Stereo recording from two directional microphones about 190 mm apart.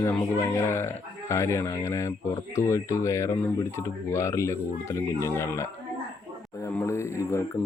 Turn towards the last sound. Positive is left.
turn(degrees=15)  # may be behind; listen again after turning